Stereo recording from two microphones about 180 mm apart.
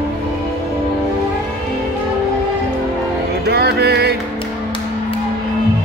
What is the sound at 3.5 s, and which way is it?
Music, 65° right (ahead or behind).